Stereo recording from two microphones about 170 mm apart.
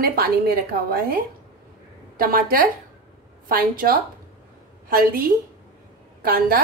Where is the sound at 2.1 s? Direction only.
55° right (ahead or behind).